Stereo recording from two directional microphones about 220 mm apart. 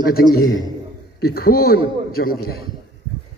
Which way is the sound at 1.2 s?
45° left (ahead or behind).